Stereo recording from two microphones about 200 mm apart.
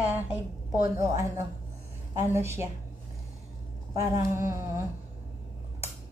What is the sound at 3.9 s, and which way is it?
Speech, 15° right (ahead or behind).